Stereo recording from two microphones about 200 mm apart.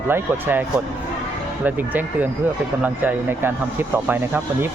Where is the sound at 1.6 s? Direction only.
10° right (ahead or behind).